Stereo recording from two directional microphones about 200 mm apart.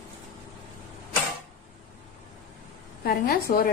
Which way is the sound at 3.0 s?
50° left (ahead or behind).